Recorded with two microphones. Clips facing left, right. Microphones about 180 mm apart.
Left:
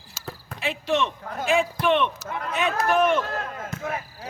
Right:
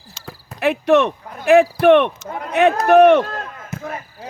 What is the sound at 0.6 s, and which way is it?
Speech, 65° right (ahead or behind).